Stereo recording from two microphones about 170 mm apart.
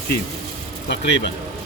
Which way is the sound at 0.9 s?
90° left.